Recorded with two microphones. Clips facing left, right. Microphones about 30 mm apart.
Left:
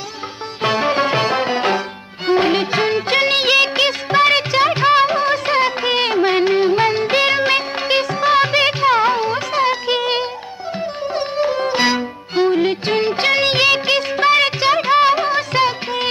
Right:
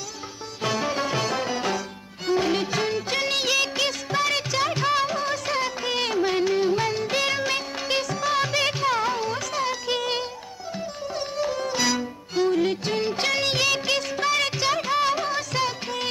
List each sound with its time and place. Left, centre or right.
0.6 s music: left
2.2 s music of bollywood: left
10.8 s music: left